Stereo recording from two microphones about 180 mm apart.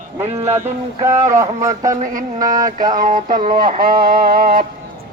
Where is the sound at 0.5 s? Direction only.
15° right (ahead or behind).